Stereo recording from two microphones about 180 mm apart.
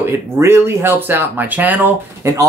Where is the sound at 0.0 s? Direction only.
15° right (ahead or behind).